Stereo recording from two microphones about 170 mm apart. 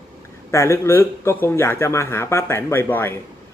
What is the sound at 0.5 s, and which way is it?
A man's voice, 15° left (ahead or behind).